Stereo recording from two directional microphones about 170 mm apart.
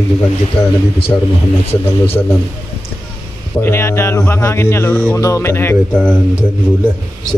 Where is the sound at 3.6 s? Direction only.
15° left (ahead or behind).